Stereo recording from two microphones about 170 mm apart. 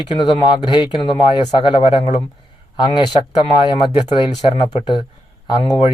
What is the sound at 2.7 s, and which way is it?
Speech, 25° left (ahead or behind).